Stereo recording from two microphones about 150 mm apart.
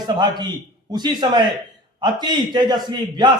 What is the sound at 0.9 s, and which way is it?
A man's voice, 30° right (ahead or behind).